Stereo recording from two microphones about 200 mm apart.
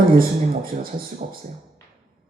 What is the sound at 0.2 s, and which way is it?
A man's voice, 45° right (ahead or behind).